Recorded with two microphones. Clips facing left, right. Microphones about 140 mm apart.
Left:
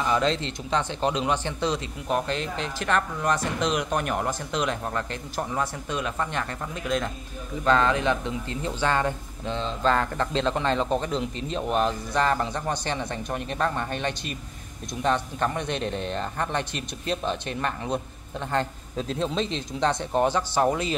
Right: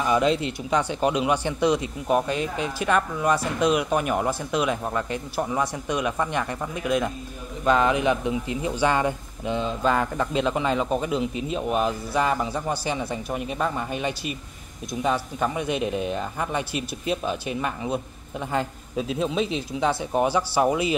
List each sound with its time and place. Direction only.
0.0 s speech: 10° right (ahead or behind)